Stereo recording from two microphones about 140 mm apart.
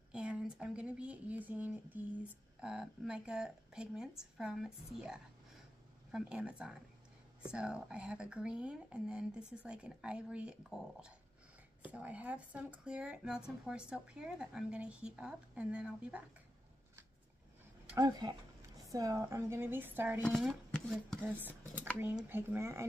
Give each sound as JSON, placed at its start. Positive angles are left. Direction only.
{"t": 0.1, "sound": "a sound", "side_deg": -5}
{"t": 2.6, "sound": "a woman's voice", "side_deg": -5}
{"t": 17.9, "sound": "speech", "side_deg": -25}
{"t": 20.2, "sound": "speech", "side_deg": 0}
{"t": 22.3, "sound": "speech", "side_deg": -15}